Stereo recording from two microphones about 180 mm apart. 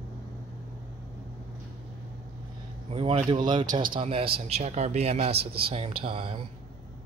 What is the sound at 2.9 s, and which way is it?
A man's voice, 30° right (ahead or behind).